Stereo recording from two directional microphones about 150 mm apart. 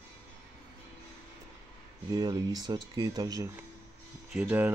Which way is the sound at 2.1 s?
25° right (ahead or behind).